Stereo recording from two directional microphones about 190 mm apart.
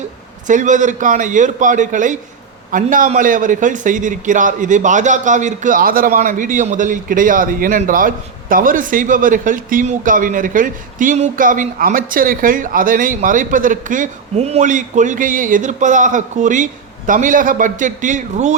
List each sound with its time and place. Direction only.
0.4 s a man's voice: 40° right (ahead or behind)